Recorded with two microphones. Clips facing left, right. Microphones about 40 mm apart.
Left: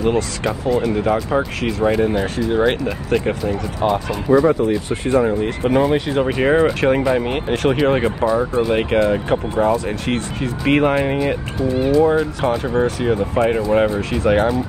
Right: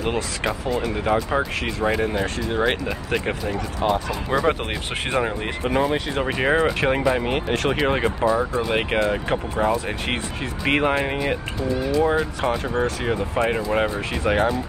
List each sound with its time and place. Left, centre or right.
0.0 s speech: centre
4.5 s speech: right
5.2 s speech: centre
5.7 s speech: centre
9.8 s speech: centre
12.4 s speech: centre